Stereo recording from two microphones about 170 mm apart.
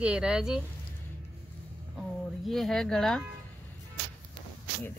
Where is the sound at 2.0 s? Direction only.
Centre (ahead or behind).